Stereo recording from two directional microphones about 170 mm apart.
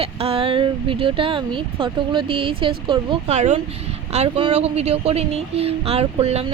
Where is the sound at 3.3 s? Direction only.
40° right (ahead or behind).